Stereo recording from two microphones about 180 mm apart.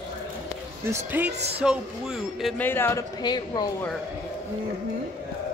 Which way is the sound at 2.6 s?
10° left (ahead or behind).